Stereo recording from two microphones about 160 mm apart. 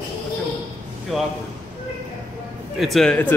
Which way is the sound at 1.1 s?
Centre (ahead or behind).